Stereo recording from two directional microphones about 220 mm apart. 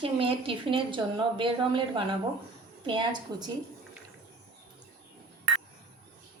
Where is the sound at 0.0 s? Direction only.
25° right (ahead or behind).